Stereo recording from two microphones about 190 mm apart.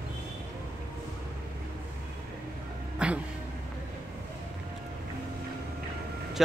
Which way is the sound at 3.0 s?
5° right (ahead or behind).